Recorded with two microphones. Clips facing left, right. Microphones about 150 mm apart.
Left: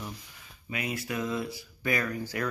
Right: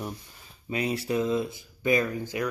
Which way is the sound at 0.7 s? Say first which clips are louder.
Right 6 dB; 30° right (ahead or behind).